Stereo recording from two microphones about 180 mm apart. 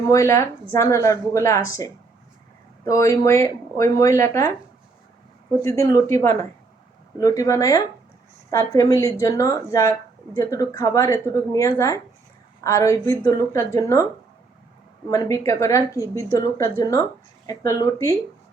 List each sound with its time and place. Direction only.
0.1 s speech: 15° left (ahead or behind)
5.6 s a woman's voice: 15° left (ahead or behind)
15.1 s a woman's voice: 15° left (ahead or behind)